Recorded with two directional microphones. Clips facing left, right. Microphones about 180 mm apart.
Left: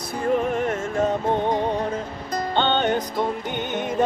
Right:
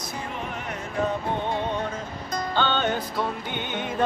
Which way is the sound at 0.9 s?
40° left (ahead or behind).